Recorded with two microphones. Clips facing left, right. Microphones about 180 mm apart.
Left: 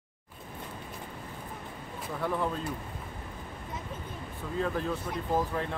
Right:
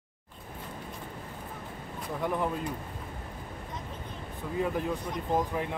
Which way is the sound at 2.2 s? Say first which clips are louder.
Right 1 dB; 15° right (ahead or behind).